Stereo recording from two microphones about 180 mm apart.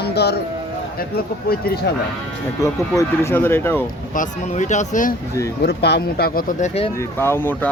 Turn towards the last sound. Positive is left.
turn(degrees=10)  # may be behind; listen again after turning